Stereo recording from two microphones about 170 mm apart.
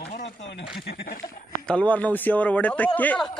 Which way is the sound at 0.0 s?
80° left.